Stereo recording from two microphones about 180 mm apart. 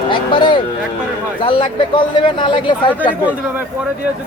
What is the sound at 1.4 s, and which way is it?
Speech, 30° left (ahead or behind).